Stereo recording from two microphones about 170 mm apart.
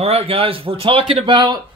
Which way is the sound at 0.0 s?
35° right (ahead or behind).